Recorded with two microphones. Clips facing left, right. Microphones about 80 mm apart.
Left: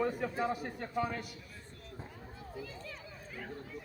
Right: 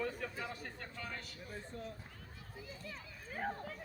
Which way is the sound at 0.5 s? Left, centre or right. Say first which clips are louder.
Left 11 dB; centre.